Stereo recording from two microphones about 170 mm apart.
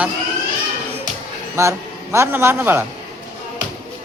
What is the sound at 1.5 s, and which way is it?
A man's voice, 15° right (ahead or behind).